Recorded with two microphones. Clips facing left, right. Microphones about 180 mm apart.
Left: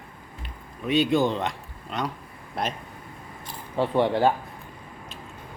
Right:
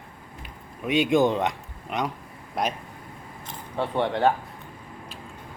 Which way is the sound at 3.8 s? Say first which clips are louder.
Left 3 dB; 10° left (ahead or behind).